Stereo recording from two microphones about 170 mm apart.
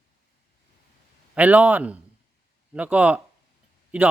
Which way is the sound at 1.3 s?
10° right (ahead or behind).